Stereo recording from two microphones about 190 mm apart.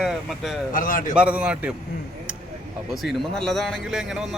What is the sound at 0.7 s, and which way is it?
Speech, 45° left (ahead or behind).